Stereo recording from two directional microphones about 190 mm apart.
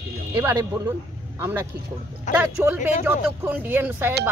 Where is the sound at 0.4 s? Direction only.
10° right (ahead or behind).